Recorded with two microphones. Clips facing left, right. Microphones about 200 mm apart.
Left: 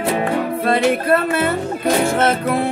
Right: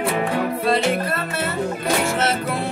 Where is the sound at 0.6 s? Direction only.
55° left (ahead or behind).